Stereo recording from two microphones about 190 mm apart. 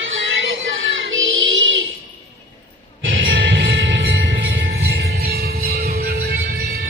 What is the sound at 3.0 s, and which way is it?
Music, 90° right.